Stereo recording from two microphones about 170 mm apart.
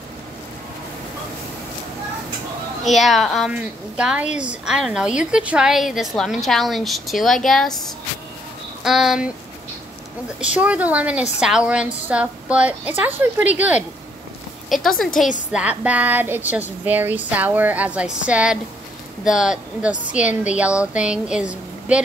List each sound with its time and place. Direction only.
2.8 s a woman's voice: centre (ahead or behind)
8.8 s a woman's voice: centre (ahead or behind)
10.4 s a woman's voice: 5° right (ahead or behind)